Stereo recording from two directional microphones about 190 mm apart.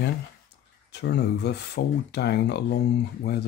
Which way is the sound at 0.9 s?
60° left (ahead or behind).